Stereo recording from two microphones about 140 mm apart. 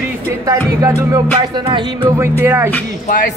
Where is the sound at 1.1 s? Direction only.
30° right (ahead or behind).